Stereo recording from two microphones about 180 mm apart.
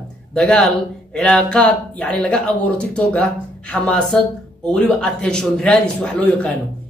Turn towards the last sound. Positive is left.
turn(degrees=5)  # may be behind; listen again after turning